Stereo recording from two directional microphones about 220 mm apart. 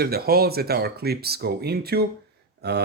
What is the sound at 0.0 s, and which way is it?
Speech, 45° right (ahead or behind).